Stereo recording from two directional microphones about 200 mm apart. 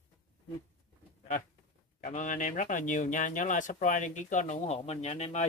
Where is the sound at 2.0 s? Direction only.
40° left (ahead or behind).